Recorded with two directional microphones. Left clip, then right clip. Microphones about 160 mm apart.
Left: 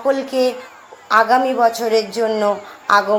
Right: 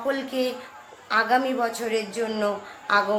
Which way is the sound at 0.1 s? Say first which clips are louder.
Left 10 dB; 20° left (ahead or behind).